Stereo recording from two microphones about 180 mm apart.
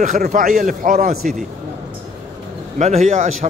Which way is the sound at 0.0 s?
45° right (ahead or behind).